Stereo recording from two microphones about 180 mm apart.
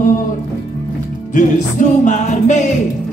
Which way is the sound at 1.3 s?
45° left (ahead or behind).